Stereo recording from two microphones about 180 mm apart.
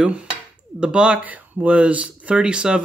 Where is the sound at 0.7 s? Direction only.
5° right (ahead or behind).